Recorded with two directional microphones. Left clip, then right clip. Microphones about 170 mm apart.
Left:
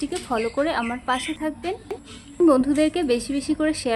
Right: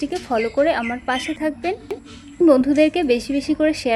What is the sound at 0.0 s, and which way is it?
Speech, 10° right (ahead or behind).